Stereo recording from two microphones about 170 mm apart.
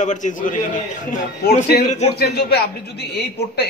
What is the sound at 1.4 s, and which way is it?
Speech, 70° left (ahead or behind).